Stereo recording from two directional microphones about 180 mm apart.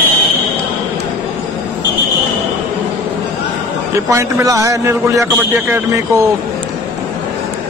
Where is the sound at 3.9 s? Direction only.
15° right (ahead or behind).